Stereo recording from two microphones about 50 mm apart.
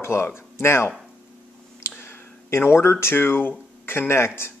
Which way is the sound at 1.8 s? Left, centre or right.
Left.